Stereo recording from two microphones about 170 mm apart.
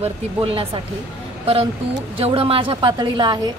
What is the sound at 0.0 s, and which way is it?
Speech, 35° right (ahead or behind).